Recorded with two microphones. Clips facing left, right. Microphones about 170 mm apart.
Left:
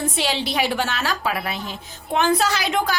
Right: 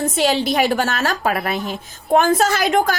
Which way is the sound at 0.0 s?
45° right (ahead or behind).